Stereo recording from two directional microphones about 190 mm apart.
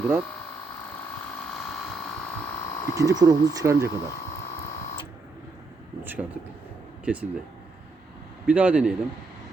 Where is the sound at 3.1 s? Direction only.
20° right (ahead or behind).